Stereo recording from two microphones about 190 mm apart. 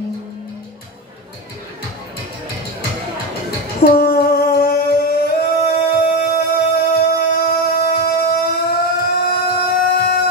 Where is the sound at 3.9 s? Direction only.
55° left (ahead or behind).